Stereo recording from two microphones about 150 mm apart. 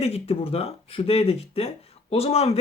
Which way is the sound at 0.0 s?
40° left (ahead or behind).